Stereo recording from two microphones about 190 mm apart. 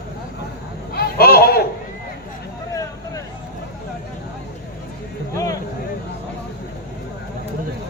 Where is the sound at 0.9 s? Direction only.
55° left (ahead or behind).